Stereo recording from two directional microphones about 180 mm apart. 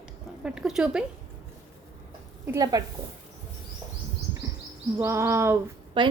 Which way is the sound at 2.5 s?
20° right (ahead or behind).